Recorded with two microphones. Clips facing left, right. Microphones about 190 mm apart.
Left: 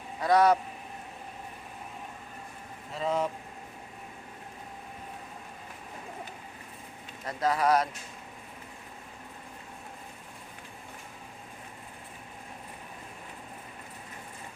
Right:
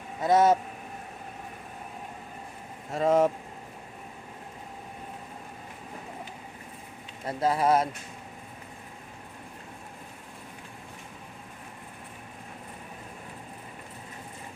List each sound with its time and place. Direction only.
0.2 s speech: 25° right (ahead or behind)
2.9 s speech: 50° right (ahead or behind)
7.3 s speech: 30° right (ahead or behind)